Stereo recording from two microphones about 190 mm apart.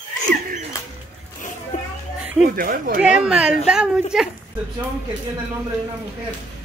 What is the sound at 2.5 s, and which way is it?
Speech, 45° right (ahead or behind).